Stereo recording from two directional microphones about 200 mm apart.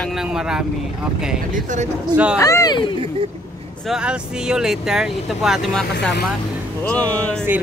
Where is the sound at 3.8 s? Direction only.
5° right (ahead or behind).